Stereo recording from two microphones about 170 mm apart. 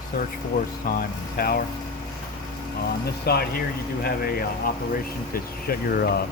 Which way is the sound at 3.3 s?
65° left (ahead or behind).